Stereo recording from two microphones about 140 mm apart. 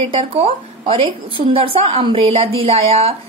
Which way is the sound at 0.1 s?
45° right (ahead or behind).